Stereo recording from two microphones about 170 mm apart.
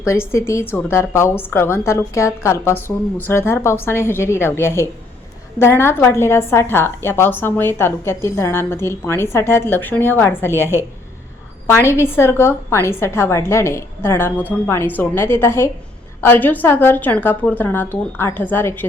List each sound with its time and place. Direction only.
0.0 s a woman's voice: 15° left (ahead or behind)